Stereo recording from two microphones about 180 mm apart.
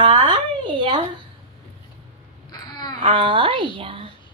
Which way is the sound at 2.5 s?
25° left (ahead or behind).